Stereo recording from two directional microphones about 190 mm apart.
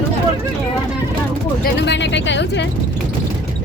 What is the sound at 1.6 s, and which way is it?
Speech, 65° left (ahead or behind).